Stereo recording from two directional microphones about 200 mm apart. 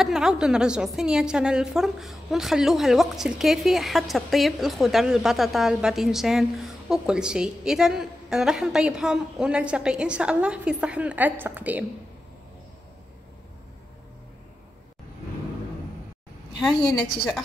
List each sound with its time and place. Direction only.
0.0 s a woman's voice: centre (ahead or behind)